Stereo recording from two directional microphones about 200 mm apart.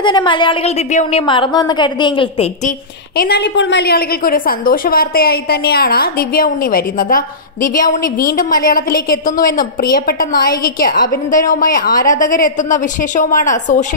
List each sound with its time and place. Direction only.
0.0 s a woman's voice: 25° left (ahead or behind)
3.2 s a woman's voice: 55° left (ahead or behind); by 13.8 s 40° left (ahead or behind)